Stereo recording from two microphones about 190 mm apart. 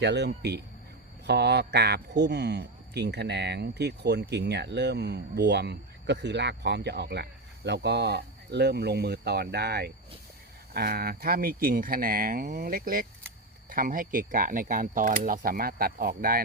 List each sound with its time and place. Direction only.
0.0 s speech: 60° right (ahead or behind)
1.3 s speech: 60° right (ahead or behind)